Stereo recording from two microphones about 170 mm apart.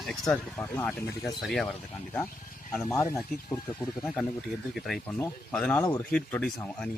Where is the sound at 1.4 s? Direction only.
Centre (ahead or behind).